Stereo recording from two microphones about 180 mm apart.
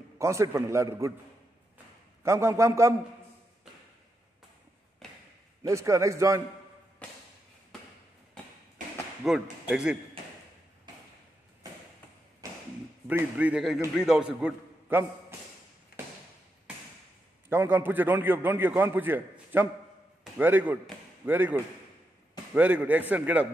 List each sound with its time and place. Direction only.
0.2 s a man's voice: 15° right (ahead or behind)
2.2 s a man's voice: 15° right (ahead or behind)
5.6 s a man's voice: 15° right (ahead or behind)
9.2 s speech: centre (ahead or behind)
12.4 s tap: 20° right (ahead or behind)
13.1 s a man's voice: 5° right (ahead or behind)
17.5 s a man's voice: 10° right (ahead or behind)